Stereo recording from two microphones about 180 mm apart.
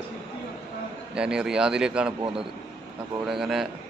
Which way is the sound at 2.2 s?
30° right (ahead or behind).